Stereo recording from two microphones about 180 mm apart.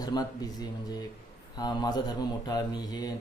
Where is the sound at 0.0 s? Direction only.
20° left (ahead or behind).